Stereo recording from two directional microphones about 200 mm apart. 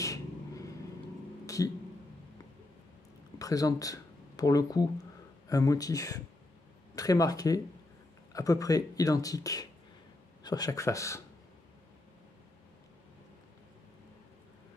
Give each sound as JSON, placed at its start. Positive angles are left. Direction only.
{"t": 0.0, "sound": "vehicle", "side_deg": 15}
{"t": 1.4, "sound": "a sound", "side_deg": 15}
{"t": 3.3, "sound": "speech", "side_deg": 15}